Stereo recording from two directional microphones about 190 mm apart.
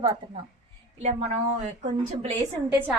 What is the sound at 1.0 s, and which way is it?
A woman's voice, 35° right (ahead or behind).